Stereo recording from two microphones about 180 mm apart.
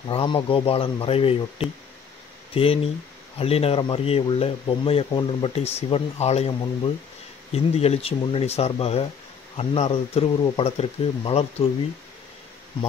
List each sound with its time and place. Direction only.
0.1 s speech: 30° left (ahead or behind)